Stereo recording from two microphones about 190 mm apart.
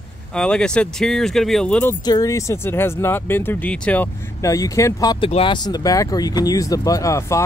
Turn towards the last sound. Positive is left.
turn(degrees=15)  # may be behind; listen again after turning